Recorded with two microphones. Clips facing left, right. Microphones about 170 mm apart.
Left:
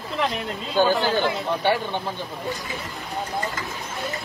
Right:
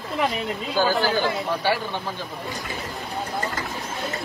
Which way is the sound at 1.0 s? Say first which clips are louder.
Even; 20° left (ahead or behind).